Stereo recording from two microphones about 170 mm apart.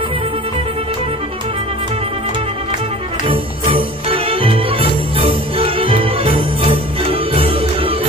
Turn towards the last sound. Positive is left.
turn(degrees=-35)  # may be behind; listen again after turning